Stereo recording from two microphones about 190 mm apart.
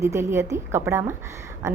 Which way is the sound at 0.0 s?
15° right (ahead or behind).